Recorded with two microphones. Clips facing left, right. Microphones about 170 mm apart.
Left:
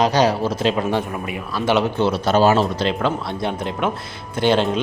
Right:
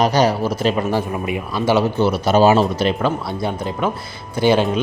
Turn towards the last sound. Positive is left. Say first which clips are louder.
# right 2 dB
turn(degrees=-5)  # may be behind; listen again after turning